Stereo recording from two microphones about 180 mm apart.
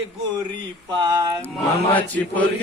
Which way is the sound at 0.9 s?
20° right (ahead or behind).